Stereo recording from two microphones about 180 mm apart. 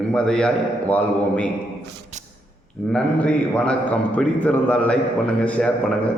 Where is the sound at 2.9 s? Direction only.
5° left (ahead or behind).